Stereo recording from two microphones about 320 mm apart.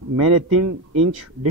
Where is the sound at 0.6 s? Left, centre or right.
Right.